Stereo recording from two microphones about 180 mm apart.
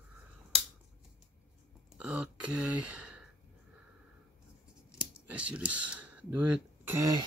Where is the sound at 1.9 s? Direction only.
5° right (ahead or behind).